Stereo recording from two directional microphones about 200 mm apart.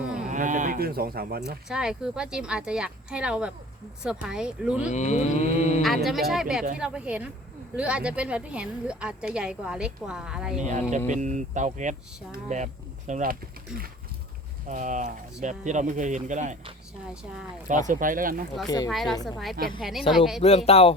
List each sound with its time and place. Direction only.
0.0 s a sound: 5° right (ahead or behind)
0.3 s speech: 40° right (ahead or behind)
1.6 s a woman's voice: 5° right (ahead or behind)
4.9 s cattle: 35° left (ahead or behind)
5.8 s a woman's voice: centre (ahead or behind)
10.6 s speech: 35° right (ahead or behind)
14.7 s speech: 40° right (ahead or behind)
18.9 s a woman's voice: centre (ahead or behind)
19.1 s speech: 20° left (ahead or behind)
19.8 s a woman's voice: centre (ahead or behind)
20.4 s speech: 30° left (ahead or behind)